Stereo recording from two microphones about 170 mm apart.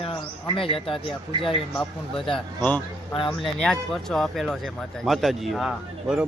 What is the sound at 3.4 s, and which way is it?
A man's voice, centre (ahead or behind).